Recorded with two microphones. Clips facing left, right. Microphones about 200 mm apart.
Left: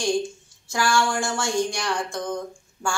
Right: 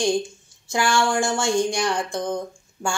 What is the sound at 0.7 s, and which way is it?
Speech, 20° right (ahead or behind).